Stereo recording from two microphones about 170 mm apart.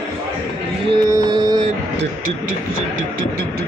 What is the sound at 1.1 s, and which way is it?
Mantra, 25° right (ahead or behind).